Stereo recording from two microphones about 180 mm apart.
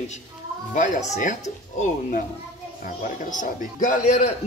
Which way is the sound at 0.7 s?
45° left (ahead or behind).